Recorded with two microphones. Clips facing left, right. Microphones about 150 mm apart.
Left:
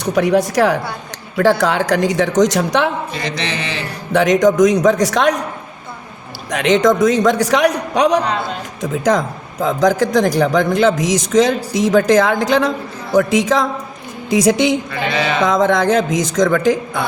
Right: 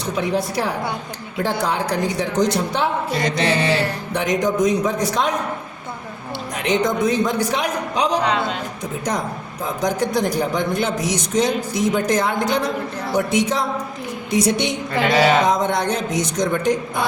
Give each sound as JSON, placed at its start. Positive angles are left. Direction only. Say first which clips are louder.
{"t": 0.0, "sound": "a woman's voice", "louder": "left 7 dB", "side_deg": 70}
{"t": 3.1, "sound": "a sound", "louder": "right 3 dB", "side_deg": -40}
{"t": 4.1, "sound": "a man's voice", "louder": "left 9 dB", "side_deg": 90}
{"t": 6.5, "sound": "a man's voice", "louder": "left 7 dB", "side_deg": 90}
{"t": 8.8, "sound": "a man's voice", "louder": "left 10 dB", "side_deg": 90}
{"t": 15.1, "sound": "a sound", "louder": "right 4 dB", "side_deg": -40}
{"t": 15.4, "sound": "a man's voice", "louder": "left 5 dB", "side_deg": 90}